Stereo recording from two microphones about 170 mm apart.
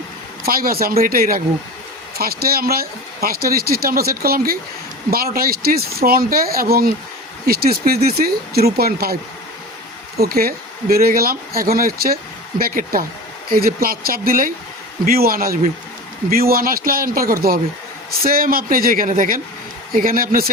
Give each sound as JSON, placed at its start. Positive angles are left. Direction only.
{"t": 0.4, "sound": "speech", "side_deg": -60}
{"t": 10.2, "sound": "speech", "side_deg": -60}